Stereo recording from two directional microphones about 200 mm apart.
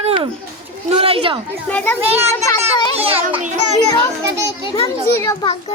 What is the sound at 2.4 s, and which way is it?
Children playing, 20° left (ahead or behind).